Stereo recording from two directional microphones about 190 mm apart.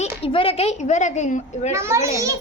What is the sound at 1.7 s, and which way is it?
Speech, 15° right (ahead or behind).